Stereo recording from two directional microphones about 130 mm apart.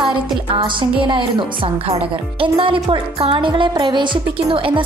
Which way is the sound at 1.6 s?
50° right (ahead or behind).